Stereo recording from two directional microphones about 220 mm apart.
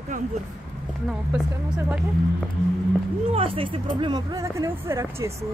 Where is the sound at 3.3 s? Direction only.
25° right (ahead or behind).